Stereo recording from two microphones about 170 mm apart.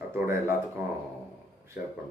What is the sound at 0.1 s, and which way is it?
Speech, 15° right (ahead or behind).